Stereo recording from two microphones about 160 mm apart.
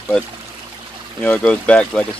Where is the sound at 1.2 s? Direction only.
10° left (ahead or behind).